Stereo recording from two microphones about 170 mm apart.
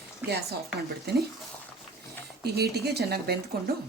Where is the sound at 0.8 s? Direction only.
70° right (ahead or behind).